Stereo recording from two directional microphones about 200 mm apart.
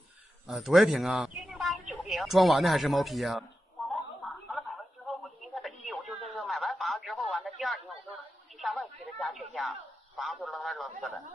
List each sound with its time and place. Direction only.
0.5 s a man's voice: centre (ahead or behind)
4.2 s a sound: 5° left (ahead or behind)
5.8 s telephone: centre (ahead or behind)
8.5 s a man's voice: centre (ahead or behind)